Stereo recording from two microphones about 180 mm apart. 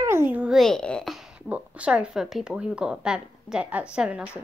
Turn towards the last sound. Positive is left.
turn(degrees=-5)  # may be behind; listen again after turning